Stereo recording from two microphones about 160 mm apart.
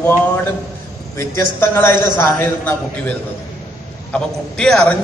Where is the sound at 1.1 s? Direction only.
15° left (ahead or behind).